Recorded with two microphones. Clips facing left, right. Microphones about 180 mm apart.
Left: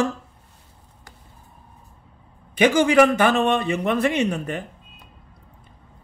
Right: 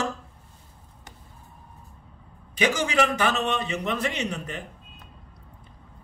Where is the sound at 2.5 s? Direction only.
55° left (ahead or behind).